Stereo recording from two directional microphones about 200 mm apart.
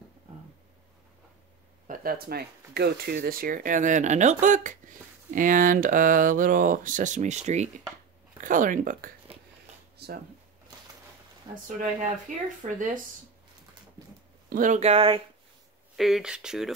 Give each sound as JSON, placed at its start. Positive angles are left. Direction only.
{"t": 1.9, "sound": "speech", "side_deg": -45}
{"t": 9.9, "sound": "a sound", "side_deg": -55}
{"t": 12.3, "sound": "speech", "side_deg": -40}
{"t": 14.5, "sound": "speech", "side_deg": -40}
{"t": 16.0, "sound": "speech", "side_deg": 0}